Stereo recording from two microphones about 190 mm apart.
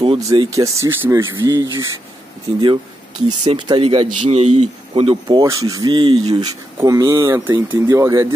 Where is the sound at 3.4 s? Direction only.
30° right (ahead or behind).